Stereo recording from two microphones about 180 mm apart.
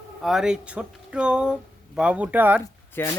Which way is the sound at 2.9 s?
15° left (ahead or behind).